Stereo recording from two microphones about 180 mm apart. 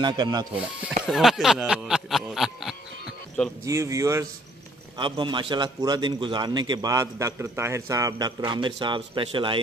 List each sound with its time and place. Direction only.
0.0 s a man's voice: 25° right (ahead or behind)
0.6 s speech: 5° right (ahead or behind)
3.6 s a man's voice: 15° right (ahead or behind)
8.5 s a man's voice: 25° right (ahead or behind)